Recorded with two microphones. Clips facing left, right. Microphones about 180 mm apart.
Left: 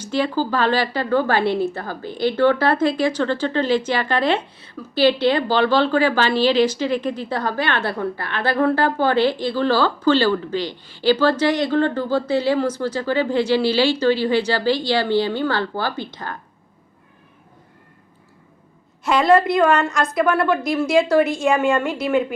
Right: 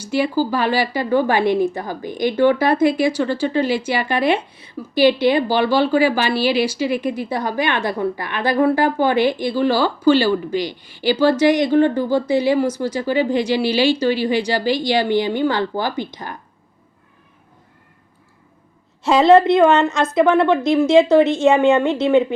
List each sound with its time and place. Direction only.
0.0 s a woman's voice: 10° right (ahead or behind)
19.0 s a woman's voice: 25° right (ahead or behind)